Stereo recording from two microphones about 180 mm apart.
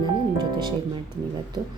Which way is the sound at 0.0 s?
25° right (ahead or behind).